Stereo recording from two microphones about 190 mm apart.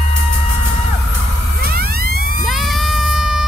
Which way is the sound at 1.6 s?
50° right (ahead or behind).